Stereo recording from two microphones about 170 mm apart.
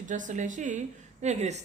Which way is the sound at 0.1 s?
50° right (ahead or behind).